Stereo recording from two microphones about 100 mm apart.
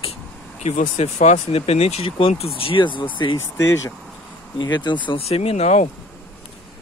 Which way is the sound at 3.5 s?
35° left (ahead or behind).